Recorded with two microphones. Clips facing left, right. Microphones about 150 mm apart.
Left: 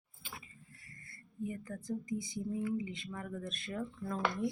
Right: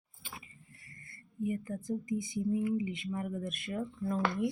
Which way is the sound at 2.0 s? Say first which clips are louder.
Right 4 dB; 50° right (ahead or behind).